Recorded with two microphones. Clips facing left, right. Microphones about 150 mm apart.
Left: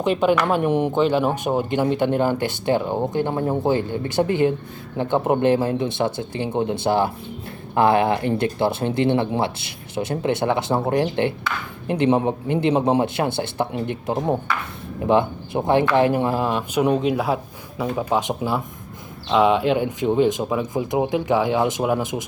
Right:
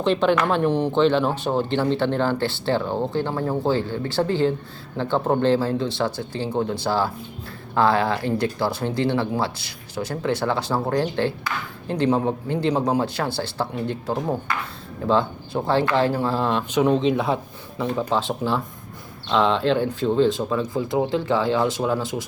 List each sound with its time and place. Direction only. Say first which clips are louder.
0.0 s speech: left 1 dB; 10° left (ahead or behind)